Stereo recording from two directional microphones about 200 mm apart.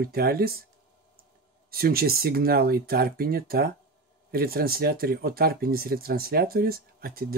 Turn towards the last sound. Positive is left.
turn(degrees=-45)  # may be behind; listen again after turning